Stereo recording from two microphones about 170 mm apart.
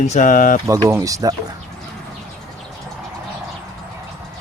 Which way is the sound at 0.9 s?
15° right (ahead or behind).